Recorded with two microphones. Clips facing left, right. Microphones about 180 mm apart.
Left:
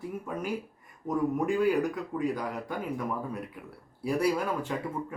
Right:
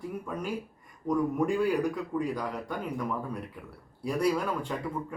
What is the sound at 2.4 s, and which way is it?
Speech, 5° left (ahead or behind).